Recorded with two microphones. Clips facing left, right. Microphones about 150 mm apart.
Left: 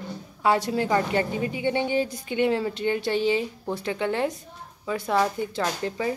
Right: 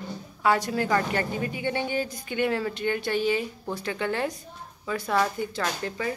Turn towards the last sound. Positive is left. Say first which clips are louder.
# left 3 dB
turn(degrees=20)  # may be behind; listen again after turning